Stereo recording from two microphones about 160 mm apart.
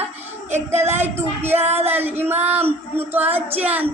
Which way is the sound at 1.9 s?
15° right (ahead or behind).